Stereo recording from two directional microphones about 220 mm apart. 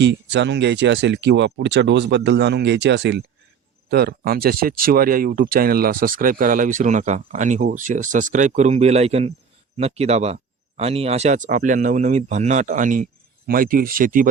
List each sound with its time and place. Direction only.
0.0 s speech: 50° right (ahead or behind)